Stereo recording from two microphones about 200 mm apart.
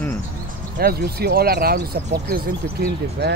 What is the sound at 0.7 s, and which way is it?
Speech, 50° right (ahead or behind).